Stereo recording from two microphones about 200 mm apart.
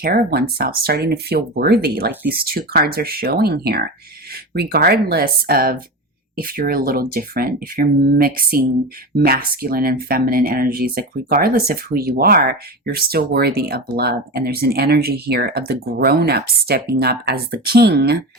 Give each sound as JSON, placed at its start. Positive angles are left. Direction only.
{"t": 0.0, "sound": "speech", "side_deg": -50}